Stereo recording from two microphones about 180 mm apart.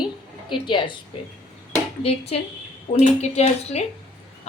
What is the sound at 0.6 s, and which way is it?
Speech, 25° left (ahead or behind).